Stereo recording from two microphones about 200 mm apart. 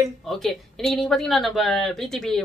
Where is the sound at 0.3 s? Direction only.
Centre (ahead or behind).